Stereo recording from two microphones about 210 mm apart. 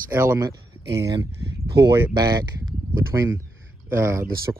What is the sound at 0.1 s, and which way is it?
Speech, 10° right (ahead or behind).